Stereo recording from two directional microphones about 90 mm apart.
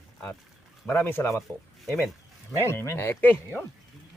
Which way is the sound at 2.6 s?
30° left (ahead or behind).